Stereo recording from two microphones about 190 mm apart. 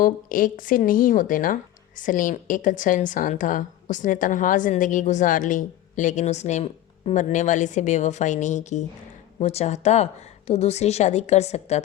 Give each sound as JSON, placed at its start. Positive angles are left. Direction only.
{"t": 0.0, "sound": "a woman's voice", "side_deg": 45}